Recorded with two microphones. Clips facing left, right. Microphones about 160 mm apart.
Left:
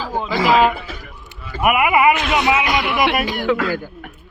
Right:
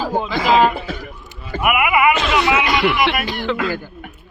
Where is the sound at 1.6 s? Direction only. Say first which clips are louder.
Left 1 dB; 30° left (ahead or behind); by 3.6 s 15° left (ahead or behind).